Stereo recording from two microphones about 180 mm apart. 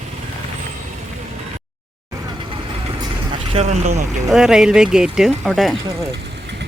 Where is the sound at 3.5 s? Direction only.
35° right (ahead or behind).